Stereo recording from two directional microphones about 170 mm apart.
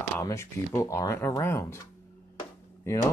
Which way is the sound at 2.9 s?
15° left (ahead or behind).